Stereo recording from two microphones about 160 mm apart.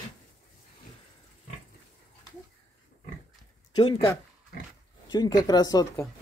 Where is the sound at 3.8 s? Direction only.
30° left (ahead or behind).